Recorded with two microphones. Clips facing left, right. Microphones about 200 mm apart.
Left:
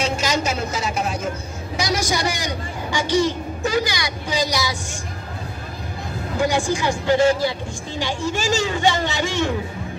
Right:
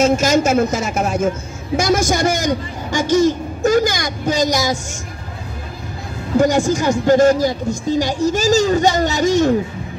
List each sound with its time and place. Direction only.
0.0 s a man's voice: 45° right (ahead or behind)
6.3 s speech: 40° right (ahead or behind)